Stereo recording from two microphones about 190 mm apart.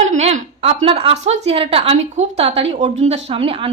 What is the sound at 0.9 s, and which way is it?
A woman's voice, 30° right (ahead or behind).